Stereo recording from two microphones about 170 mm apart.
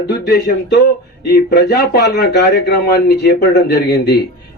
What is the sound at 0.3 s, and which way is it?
Speech, 65° left (ahead or behind).